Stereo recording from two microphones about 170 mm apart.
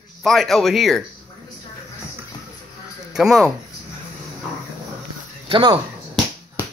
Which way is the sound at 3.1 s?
5° right (ahead or behind).